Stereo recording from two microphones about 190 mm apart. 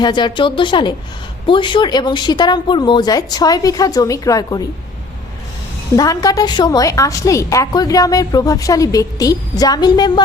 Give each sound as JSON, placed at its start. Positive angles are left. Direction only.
{"t": 0.0, "sound": "a woman's voice", "side_deg": 25}
{"t": 6.0, "sound": "a woman's voice", "side_deg": 20}